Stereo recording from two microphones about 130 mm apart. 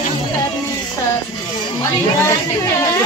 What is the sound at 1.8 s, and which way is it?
Speech, 25° left (ahead or behind).